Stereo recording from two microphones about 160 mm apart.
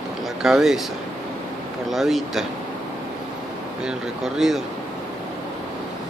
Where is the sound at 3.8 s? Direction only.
Centre (ahead or behind).